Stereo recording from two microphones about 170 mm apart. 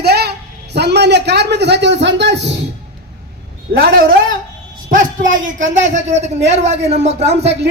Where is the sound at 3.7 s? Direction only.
60° right (ahead or behind).